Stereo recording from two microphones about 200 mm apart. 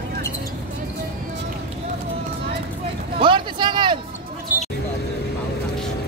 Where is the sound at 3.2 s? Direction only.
25° right (ahead or behind).